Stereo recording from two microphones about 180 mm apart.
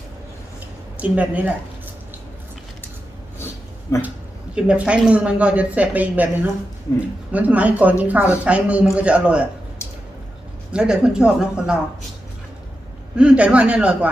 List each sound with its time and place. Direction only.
0.9 s a woman's voice: 10° right (ahead or behind)
3.9 s speech: 15° left (ahead or behind)
4.5 s a woman's voice: 5° right (ahead or behind)
7.3 s a woman's voice: 10° right (ahead or behind)
10.7 s speech: 5° right (ahead or behind)
13.1 s a woman's voice: 5° right (ahead or behind)